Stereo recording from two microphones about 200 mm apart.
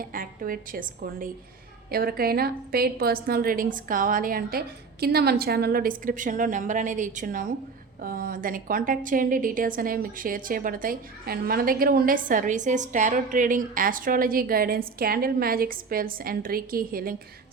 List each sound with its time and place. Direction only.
0.0 s a woman's voice: 45° right (ahead or behind)